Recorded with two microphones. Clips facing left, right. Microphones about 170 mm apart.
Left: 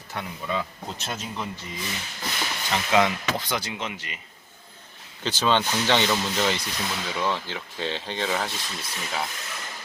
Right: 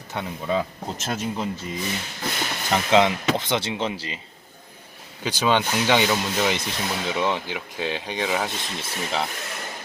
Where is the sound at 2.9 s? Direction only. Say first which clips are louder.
Right 3 dB; 20° right (ahead or behind).